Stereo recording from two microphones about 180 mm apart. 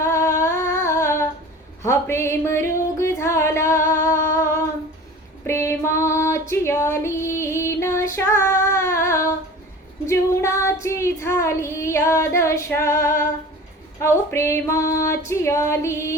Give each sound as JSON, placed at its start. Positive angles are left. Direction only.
{"t": 0.0, "sound": "humming", "side_deg": 15}
{"t": 1.8, "sound": "music", "side_deg": 15}
{"t": 5.5, "sound": "female singing", "side_deg": 15}
{"t": 10.1, "sound": "child singing", "side_deg": 15}
{"t": 14.0, "sound": "female singing", "side_deg": 15}